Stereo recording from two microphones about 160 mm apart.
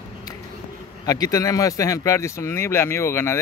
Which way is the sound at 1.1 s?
25° left (ahead or behind).